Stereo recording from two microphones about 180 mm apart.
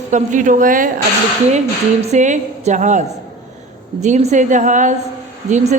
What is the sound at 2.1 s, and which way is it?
A woman's voice, 40° right (ahead or behind).